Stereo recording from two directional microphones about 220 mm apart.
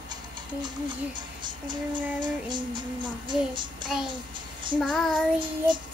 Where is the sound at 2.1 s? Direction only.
20° right (ahead or behind).